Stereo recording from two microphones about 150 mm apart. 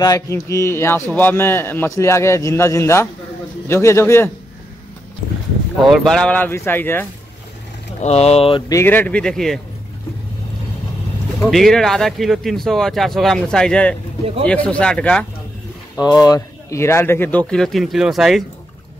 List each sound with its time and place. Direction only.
0.0 s a man's voice: 20° left (ahead or behind)
5.9 s a man's voice: 5° left (ahead or behind)
8.0 s speech: 45° left (ahead or behind)
8.6 s a man's voice: 15° left (ahead or behind)
11.5 s a man's voice: centre (ahead or behind)
16.3 s a man's voice: 20° left (ahead or behind); by 18.4 s centre (ahead or behind)